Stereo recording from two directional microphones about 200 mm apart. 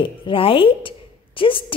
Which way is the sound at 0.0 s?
25° left (ahead or behind).